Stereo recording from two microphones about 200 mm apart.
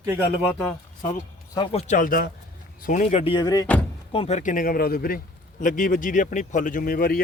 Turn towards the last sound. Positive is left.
turn(degrees=45)  # may be behind; listen again after turning